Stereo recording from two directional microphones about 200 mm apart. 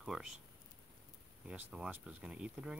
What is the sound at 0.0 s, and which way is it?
Speech, centre (ahead or behind).